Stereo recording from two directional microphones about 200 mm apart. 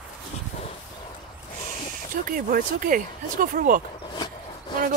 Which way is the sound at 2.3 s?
45° right (ahead or behind).